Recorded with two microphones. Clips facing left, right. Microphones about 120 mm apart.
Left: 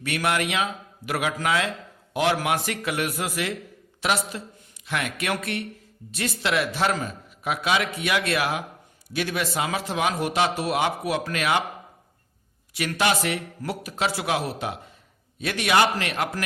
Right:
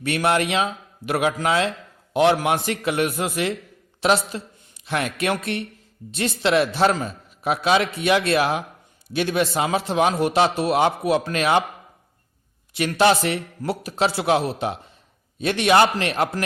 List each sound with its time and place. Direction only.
0.0 s a man's voice: 30° right (ahead or behind)
12.7 s a man's voice: 30° right (ahead or behind)